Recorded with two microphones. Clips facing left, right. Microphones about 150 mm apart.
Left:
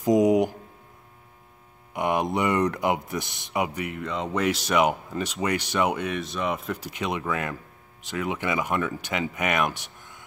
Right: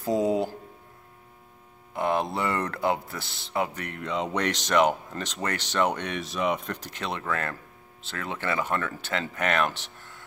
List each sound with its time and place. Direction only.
0.0 s hum: 15° left (ahead or behind)
2.0 s speech: 15° left (ahead or behind)